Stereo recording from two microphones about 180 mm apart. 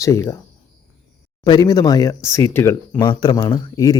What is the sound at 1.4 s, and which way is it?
Speech, 20° left (ahead or behind).